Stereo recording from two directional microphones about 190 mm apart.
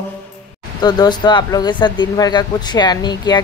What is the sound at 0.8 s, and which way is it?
Speech, 20° left (ahead or behind).